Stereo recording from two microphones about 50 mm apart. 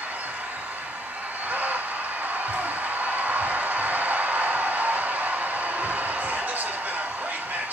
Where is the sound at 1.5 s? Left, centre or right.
Right.